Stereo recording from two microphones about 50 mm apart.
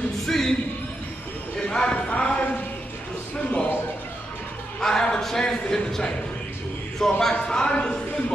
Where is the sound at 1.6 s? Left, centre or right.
Left.